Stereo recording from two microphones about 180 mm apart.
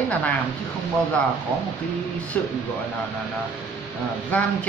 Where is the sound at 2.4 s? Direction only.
10° left (ahead or behind).